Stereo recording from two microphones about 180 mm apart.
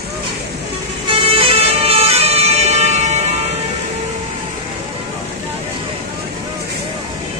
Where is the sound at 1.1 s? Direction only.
30° right (ahead or behind).